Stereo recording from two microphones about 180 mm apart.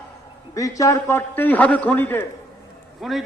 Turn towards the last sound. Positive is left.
turn(degrees=0)  # may be behind; listen again after turning